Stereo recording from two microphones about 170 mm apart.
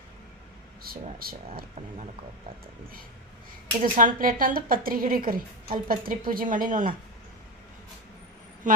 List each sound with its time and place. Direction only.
0.8 s speech: 60° right (ahead or behind)
3.8 s speech: 50° right (ahead or behind)
8.7 s speech: 50° right (ahead or behind)